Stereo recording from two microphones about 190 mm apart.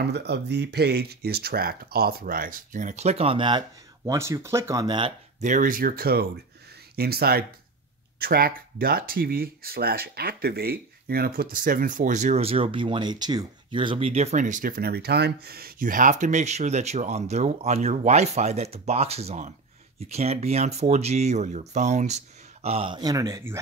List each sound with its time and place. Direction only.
0.0 s speech: 60° right (ahead or behind); by 5.1 s 25° right (ahead or behind)
5.4 s speech: 40° right (ahead or behind); by 23.6 s 15° right (ahead or behind)